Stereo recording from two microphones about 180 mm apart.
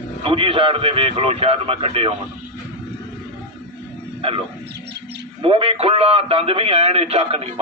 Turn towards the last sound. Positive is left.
turn(degrees=-35)  # may be behind; listen again after turning